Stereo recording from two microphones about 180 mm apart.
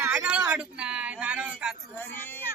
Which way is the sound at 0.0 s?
5° right (ahead or behind).